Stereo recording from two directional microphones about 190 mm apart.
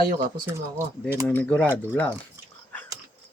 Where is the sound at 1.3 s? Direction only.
10° left (ahead or behind).